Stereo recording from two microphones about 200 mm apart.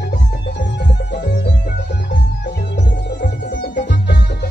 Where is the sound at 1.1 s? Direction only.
55° left (ahead or behind).